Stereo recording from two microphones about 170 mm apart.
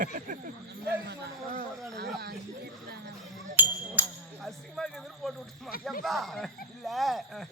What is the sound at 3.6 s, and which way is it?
Music, 10° right (ahead or behind).